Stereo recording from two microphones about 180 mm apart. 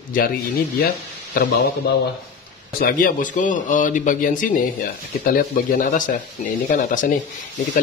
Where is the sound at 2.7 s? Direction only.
50° left (ahead or behind).